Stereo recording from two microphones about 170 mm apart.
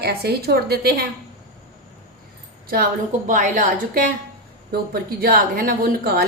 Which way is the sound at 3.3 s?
55° right (ahead or behind).